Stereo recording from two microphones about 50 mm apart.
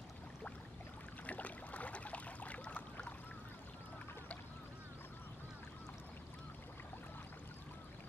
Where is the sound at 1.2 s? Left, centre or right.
Left.